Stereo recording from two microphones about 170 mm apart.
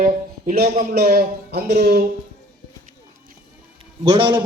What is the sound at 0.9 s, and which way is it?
Speech, 65° right (ahead or behind).